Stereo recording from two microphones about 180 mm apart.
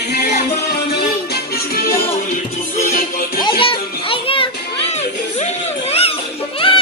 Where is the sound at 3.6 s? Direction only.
30° left (ahead or behind).